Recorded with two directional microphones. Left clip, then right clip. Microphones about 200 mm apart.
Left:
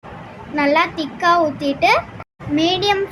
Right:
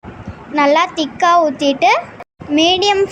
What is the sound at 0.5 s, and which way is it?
A woman's voice, 30° right (ahead or behind).